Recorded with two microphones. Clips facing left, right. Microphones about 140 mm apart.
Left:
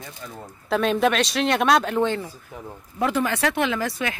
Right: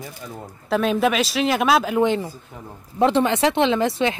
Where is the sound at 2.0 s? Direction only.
15° right (ahead or behind).